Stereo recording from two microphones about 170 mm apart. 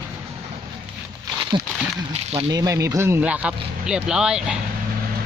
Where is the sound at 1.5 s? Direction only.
30° right (ahead or behind).